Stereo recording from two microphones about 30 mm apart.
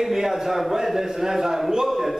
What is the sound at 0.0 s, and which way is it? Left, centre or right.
A man's voice, centre.